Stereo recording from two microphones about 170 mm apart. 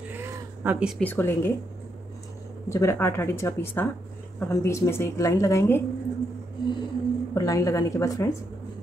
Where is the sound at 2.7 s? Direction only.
15° left (ahead or behind).